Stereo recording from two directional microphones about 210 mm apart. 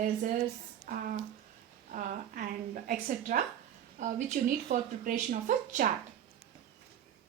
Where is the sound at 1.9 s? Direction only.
40° right (ahead or behind).